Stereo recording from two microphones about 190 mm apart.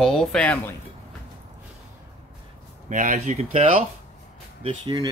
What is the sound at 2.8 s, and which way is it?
Speech, 40° right (ahead or behind).